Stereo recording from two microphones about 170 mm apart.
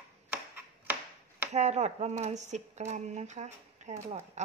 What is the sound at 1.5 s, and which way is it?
Speech, 40° right (ahead or behind).